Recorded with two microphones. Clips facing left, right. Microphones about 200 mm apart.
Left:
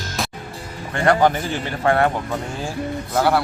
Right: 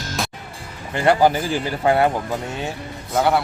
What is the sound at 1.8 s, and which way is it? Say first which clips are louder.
Speech: right 1 dB; 15° right (ahead or behind).